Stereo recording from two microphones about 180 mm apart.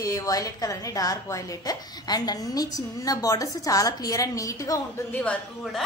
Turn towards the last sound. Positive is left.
turn(degrees=5)  # may be behind; listen again after turning